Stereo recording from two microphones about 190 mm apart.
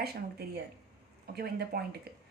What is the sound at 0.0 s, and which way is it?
Speech, 55° right (ahead or behind).